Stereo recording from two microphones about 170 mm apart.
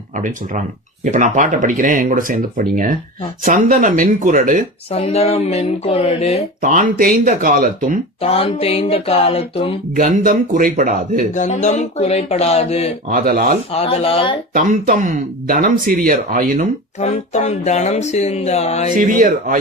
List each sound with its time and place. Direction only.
1.1 s speech: 45° right (ahead or behind)
4.9 s speech: 35° left (ahead or behind)
6.6 s speech: 50° right (ahead or behind)
8.2 s speech: 35° left (ahead or behind)
9.9 s speech: 50° right (ahead or behind)
11.3 s speech: 45° left (ahead or behind)
13.1 s speech: 55° right (ahead or behind)
13.7 s speech: 35° left (ahead or behind)
15.4 s speech: 55° right (ahead or behind)
17.0 s speech: 40° left (ahead or behind)
18.9 s speech: 50° right (ahead or behind)